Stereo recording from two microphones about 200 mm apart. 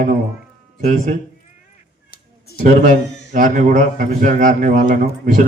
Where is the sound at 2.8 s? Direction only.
40° right (ahead or behind).